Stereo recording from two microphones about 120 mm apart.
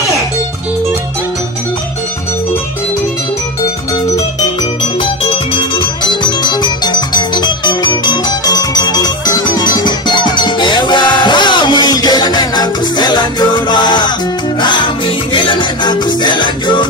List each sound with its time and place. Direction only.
5.0 s music: 45° left (ahead or behind)